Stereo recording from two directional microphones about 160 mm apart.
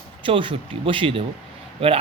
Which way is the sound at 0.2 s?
30° right (ahead or behind).